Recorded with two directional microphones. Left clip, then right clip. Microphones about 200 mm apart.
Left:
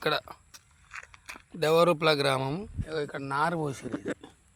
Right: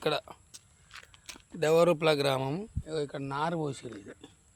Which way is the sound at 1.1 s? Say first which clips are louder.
Left 3 dB; 20° left (ahead or behind).